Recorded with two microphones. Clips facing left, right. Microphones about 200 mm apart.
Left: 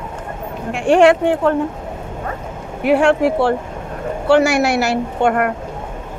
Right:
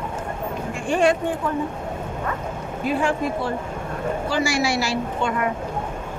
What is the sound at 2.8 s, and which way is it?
Speech, 75° left (ahead or behind).